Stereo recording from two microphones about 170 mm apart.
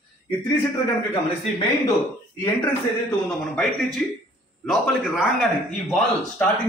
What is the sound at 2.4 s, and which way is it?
A man's voice, 10° left (ahead or behind).